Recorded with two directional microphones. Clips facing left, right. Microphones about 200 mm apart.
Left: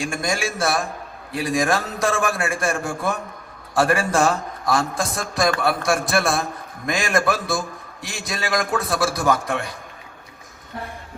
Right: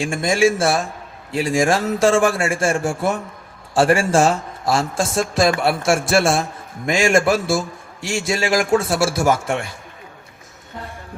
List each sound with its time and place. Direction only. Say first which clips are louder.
0.0 s a man's voice: right 8 dB; 25° right (ahead or behind)